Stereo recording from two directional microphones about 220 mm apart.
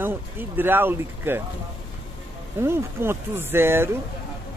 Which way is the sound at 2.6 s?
10° right (ahead or behind).